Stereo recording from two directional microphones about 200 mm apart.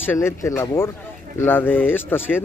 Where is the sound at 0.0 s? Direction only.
10° left (ahead or behind).